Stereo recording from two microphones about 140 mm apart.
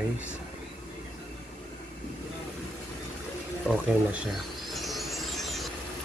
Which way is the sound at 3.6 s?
Centre (ahead or behind).